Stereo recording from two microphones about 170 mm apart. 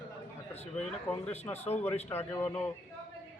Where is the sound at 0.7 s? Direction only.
10° left (ahead or behind).